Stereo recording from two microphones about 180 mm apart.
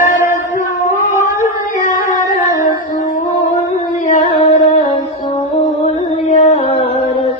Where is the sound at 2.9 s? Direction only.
50° left (ahead or behind).